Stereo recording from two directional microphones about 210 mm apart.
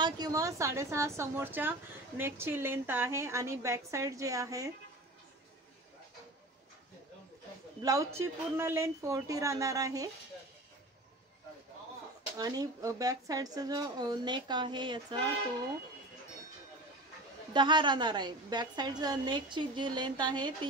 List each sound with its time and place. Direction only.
0.0 s a woman's voice: 15° right (ahead or behind)
7.8 s a woman's voice: 15° right (ahead or behind)
12.4 s a woman's voice: 20° right (ahead or behind)
17.5 s a woman's voice: 20° right (ahead or behind)